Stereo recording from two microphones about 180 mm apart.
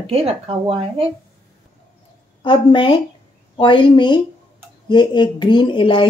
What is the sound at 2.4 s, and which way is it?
Speech, 25° left (ahead or behind).